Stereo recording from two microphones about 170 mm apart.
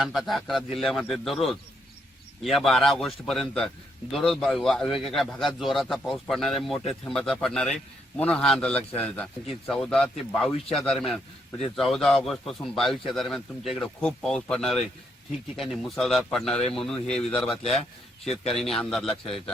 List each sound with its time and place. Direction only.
0.0 s a man's voice: centre (ahead or behind)